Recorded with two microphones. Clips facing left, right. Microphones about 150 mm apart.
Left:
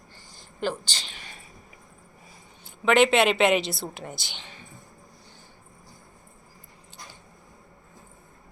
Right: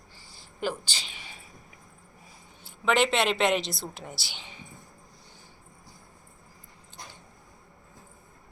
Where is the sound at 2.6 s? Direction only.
Centre (ahead or behind).